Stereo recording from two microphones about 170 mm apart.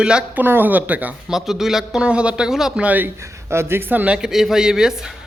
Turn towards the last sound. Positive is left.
turn(degrees=-5)  # may be behind; listen again after turning